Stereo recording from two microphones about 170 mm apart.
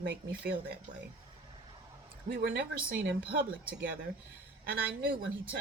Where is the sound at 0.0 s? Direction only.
65° right (ahead or behind).